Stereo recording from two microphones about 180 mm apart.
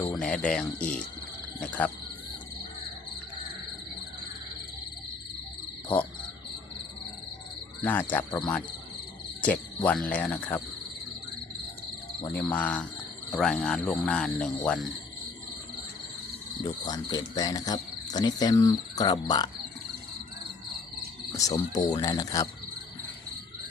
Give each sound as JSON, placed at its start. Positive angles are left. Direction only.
{"t": 0.2, "sound": "speech", "side_deg": 5}
{"t": 1.5, "sound": "insect", "side_deg": 5}
{"t": 7.8, "sound": "insect", "side_deg": 10}
{"t": 9.4, "sound": "insect", "side_deg": 10}
{"t": 12.2, "sound": "insect", "side_deg": 10}
{"t": 13.3, "sound": "speech", "side_deg": 0}
{"t": 16.6, "sound": "speech", "side_deg": 25}
{"t": 21.3, "sound": "speech", "side_deg": 20}